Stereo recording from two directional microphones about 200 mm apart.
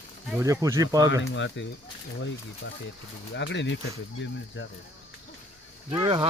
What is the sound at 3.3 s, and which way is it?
Speech, 60° left (ahead or behind).